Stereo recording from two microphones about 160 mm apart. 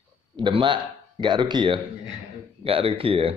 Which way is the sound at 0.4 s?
30° right (ahead or behind).